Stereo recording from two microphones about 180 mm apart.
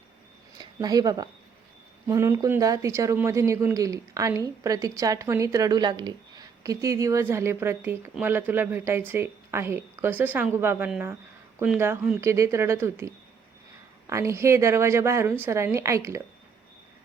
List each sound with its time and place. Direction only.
0.6 s speech: 20° right (ahead or behind)